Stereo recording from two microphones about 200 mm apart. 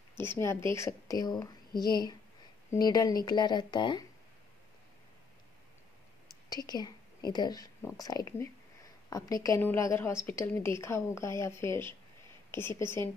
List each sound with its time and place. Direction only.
0.2 s a woman's voice: 10° left (ahead or behind)
6.5 s whispering: 20° left (ahead or behind)
7.3 s a woman's voice: 20° left (ahead or behind)